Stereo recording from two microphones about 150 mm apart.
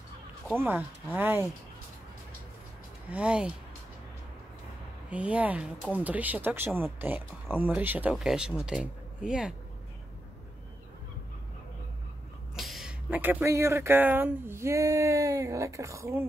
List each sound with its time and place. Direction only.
0.6 s speech: 10° right (ahead or behind)
3.1 s speech: 10° right (ahead or behind)
5.1 s speech: 10° right (ahead or behind)
12.5 s a sound: centre (ahead or behind)
13.1 s speech: 10° right (ahead or behind)